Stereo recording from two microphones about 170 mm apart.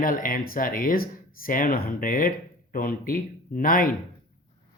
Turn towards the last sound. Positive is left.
turn(degrees=55)  # may be behind; listen again after turning